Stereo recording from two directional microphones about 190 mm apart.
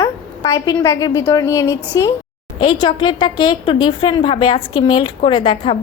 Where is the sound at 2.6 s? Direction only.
25° left (ahead or behind).